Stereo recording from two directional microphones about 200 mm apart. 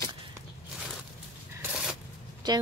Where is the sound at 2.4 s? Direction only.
20° right (ahead or behind).